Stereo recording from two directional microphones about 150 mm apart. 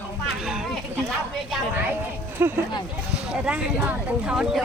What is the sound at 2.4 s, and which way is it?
Speech, 15° right (ahead or behind).